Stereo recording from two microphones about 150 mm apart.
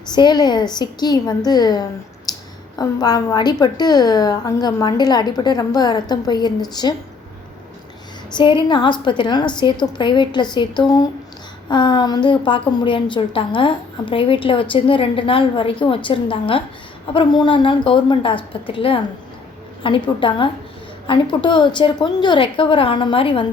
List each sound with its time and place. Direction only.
0.1 s a woman's voice: 30° left (ahead or behind)
2.3 s a sound: 25° left (ahead or behind)
2.7 s a woman's voice: 25° left (ahead or behind)
8.3 s a woman's voice: 30° left (ahead or behind)